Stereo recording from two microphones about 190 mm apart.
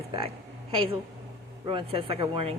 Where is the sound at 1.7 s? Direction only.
30° right (ahead or behind).